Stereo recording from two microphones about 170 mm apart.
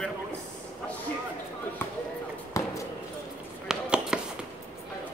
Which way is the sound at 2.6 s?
20° left (ahead or behind).